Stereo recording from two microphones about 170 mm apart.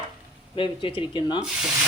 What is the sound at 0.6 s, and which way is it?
Speech, 30° left (ahead or behind).